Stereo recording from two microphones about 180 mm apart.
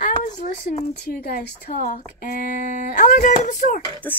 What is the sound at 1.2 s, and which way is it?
Speech, 55° left (ahead or behind).